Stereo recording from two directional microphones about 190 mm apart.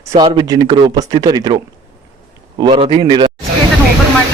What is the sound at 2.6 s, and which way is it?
Speech, 25° right (ahead or behind).